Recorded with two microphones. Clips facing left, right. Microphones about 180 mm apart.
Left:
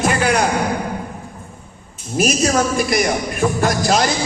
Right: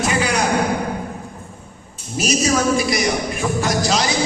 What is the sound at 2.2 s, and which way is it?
Speech, 55° left (ahead or behind).